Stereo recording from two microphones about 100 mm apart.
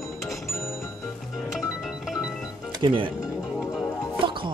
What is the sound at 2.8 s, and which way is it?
Speech, 55° right (ahead or behind).